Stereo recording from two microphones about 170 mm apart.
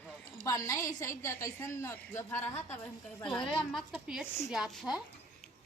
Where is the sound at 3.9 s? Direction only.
5° right (ahead or behind).